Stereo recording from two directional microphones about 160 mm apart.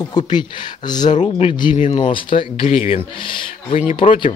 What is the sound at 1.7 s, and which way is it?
Speech, 50° left (ahead or behind).